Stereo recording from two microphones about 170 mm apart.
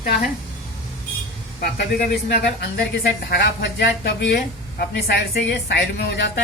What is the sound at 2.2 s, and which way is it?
Speech, 70° left (ahead or behind).